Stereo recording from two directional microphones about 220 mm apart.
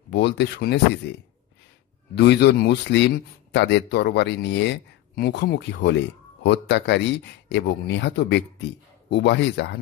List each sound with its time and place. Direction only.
0.1 s speech: 50° left (ahead or behind)
2.1 s speech: 50° left (ahead or behind)